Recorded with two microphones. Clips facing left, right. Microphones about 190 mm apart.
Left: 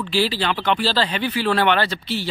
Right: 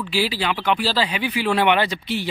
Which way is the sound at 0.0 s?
5° right (ahead or behind).